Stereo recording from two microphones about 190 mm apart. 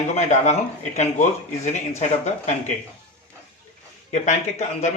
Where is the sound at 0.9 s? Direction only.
40° left (ahead or behind).